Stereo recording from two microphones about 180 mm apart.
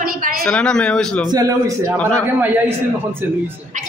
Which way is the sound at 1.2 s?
20° right (ahead or behind).